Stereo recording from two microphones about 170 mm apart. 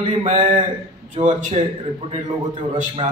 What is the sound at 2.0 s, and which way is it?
A man's voice, 35° right (ahead or behind).